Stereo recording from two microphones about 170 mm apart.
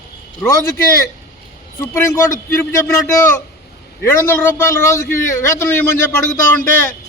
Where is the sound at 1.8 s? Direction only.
15° left (ahead or behind).